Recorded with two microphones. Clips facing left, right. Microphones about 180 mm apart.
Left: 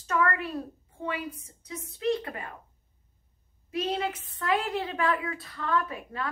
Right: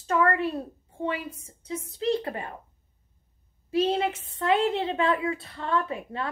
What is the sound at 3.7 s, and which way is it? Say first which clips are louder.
A woman's voice: right 5 dB; 30° right (ahead or behind).